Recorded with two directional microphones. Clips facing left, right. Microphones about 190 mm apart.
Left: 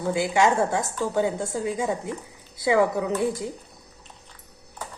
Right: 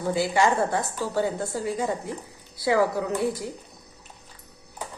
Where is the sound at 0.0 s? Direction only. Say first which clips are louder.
Left 1 dB; 15° left (ahead or behind).